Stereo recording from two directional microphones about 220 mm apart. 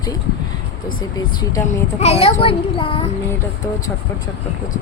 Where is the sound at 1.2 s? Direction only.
15° left (ahead or behind).